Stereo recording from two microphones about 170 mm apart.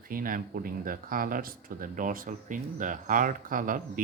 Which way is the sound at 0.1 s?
55° right (ahead or behind).